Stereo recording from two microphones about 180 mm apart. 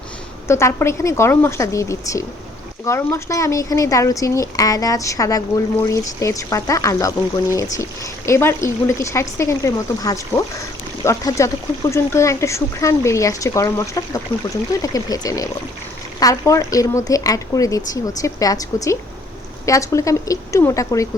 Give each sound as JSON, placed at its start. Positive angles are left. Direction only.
{"t": 0.4, "sound": "speech", "side_deg": 15}